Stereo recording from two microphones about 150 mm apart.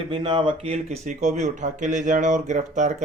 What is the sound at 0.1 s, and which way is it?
Speech, 35° right (ahead or behind).